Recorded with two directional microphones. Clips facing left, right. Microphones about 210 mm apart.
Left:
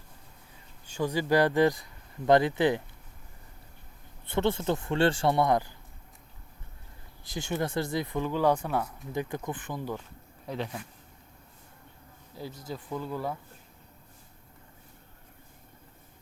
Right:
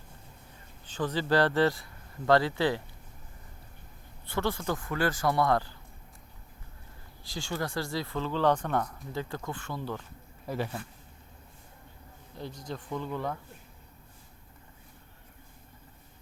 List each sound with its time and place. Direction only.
0.9 s speech: 10° left (ahead or behind)
4.3 s a man's voice: 25° left (ahead or behind)
7.3 s speech: 20° left (ahead or behind)
9.1 s speech: 15° left (ahead or behind)
10.4 s speech: 5° right (ahead or behind)
12.3 s speech: 5° left (ahead or behind)